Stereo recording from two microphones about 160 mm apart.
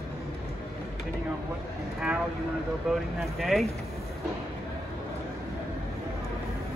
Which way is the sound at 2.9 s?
Centre (ahead or behind).